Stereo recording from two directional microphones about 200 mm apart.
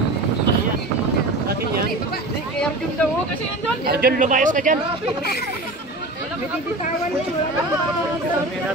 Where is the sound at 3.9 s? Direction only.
50° right (ahead or behind).